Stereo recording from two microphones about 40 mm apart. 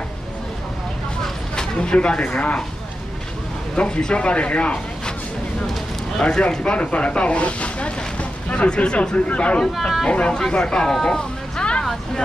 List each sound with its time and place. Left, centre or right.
1.5 s speech: left
3.8 s speech: left
6.1 s speech: left
6.6 s a sound: left
8.6 s speech: left
10.0 s speech: left